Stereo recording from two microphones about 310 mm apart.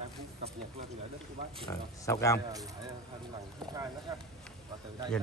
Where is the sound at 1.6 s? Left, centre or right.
Centre.